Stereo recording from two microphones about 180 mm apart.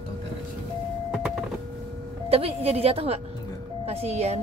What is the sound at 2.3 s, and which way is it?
A woman's voice, 35° right (ahead or behind).